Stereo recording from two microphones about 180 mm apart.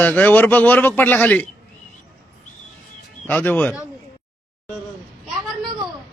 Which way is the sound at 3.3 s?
10° left (ahead or behind).